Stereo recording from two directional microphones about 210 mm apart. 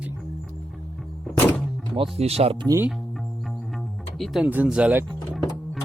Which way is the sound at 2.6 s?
10° right (ahead or behind).